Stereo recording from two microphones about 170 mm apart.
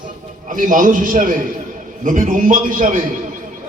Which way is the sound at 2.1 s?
50° right (ahead or behind).